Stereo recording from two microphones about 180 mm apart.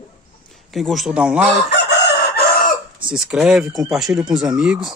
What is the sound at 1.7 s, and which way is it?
Chicken, 65° left (ahead or behind).